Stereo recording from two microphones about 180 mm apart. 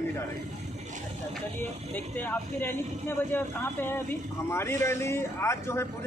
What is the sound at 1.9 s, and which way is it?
Speech, 10° left (ahead or behind).